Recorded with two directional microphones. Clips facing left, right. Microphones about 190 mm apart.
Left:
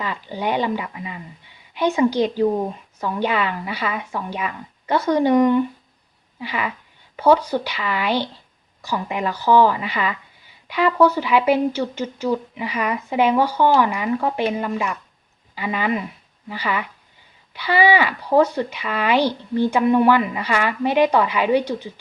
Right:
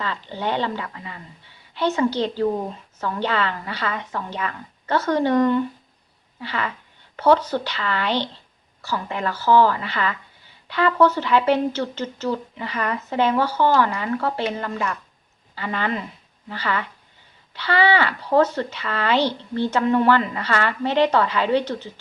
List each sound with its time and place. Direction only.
0.0 s speech: 15° left (ahead or behind)